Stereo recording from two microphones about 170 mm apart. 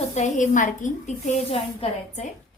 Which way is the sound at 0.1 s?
45° left (ahead or behind).